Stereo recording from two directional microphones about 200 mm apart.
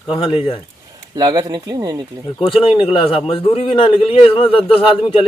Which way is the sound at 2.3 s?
25° left (ahead or behind).